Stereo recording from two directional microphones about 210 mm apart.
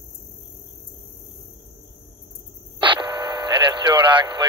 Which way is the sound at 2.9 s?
20° right (ahead or behind).